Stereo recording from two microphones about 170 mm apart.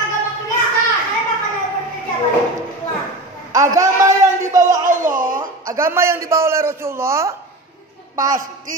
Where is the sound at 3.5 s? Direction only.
20° right (ahead or behind).